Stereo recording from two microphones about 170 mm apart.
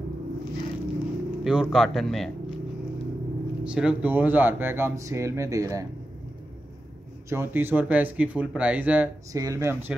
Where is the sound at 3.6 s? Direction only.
5° right (ahead or behind).